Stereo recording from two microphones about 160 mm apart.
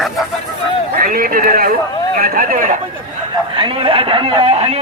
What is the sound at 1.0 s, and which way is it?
A man's voice, 65° right (ahead or behind).